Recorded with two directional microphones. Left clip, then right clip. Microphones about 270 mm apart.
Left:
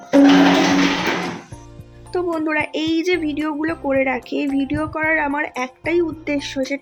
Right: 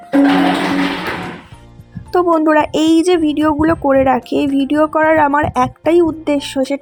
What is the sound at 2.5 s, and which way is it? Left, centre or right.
Speech, right.